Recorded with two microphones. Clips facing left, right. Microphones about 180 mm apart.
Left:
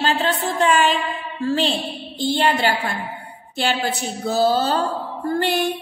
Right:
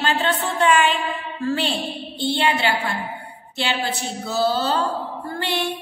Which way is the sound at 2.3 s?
40° left (ahead or behind).